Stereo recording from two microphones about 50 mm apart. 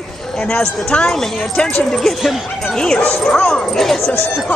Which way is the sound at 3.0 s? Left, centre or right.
Left.